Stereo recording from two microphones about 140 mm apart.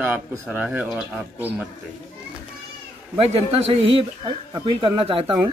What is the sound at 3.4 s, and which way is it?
A man's voice, 45° right (ahead or behind).